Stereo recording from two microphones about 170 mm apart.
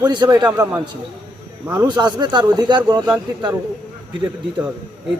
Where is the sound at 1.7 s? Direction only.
20° right (ahead or behind).